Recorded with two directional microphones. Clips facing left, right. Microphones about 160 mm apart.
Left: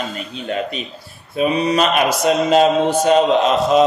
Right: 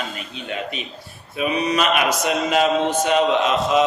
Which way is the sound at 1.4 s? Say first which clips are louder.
Left 4 dB; 35° left (ahead or behind).